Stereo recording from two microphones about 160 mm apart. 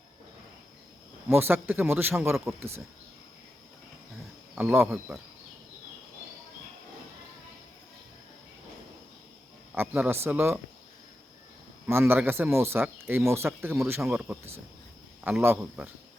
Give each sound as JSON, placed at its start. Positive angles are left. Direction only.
{"t": 1.3, "sound": "speech", "side_deg": -15}
{"t": 4.5, "sound": "speech", "side_deg": -10}
{"t": 9.7, "sound": "speech", "side_deg": -10}
{"t": 11.9, "sound": "speech", "side_deg": -15}